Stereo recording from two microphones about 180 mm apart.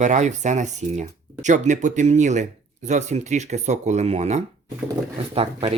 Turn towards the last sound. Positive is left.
turn(degrees=-35)  # may be behind; listen again after turning